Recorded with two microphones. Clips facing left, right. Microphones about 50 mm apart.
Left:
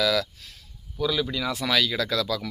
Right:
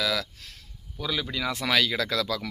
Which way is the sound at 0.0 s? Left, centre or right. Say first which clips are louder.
Left 4 dB; right.